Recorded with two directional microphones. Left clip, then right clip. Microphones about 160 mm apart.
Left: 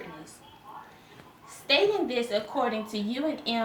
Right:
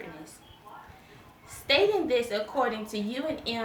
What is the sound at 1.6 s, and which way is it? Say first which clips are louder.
A woman's voice: even; 25° right (ahead or behind).